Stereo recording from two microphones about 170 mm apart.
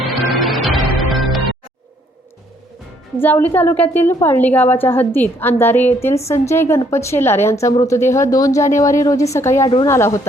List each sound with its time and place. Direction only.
0.0 s music: centre (ahead or behind)
3.2 s a woman's voice: 10° left (ahead or behind)